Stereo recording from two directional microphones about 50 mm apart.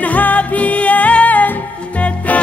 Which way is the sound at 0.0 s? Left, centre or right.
Left.